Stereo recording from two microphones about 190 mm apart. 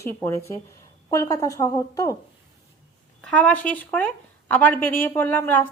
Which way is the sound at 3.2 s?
5° left (ahead or behind).